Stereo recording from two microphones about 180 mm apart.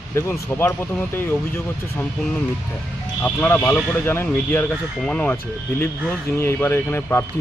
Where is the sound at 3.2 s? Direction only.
10° left (ahead or behind).